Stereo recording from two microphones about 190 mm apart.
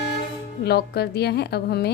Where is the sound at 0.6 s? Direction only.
60° left (ahead or behind).